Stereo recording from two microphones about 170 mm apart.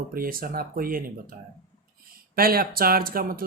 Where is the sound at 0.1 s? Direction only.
60° right (ahead or behind).